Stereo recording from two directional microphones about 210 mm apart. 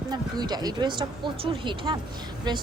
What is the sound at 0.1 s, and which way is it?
Speech, 20° right (ahead or behind).